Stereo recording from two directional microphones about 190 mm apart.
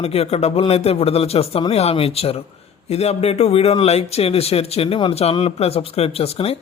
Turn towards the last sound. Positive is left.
turn(degrees=30)  # may be behind; listen again after turning